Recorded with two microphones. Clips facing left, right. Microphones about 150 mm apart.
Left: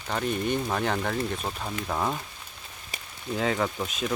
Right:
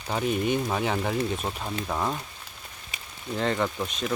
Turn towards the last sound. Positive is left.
turn(degrees=5)  # may be behind; listen again after turning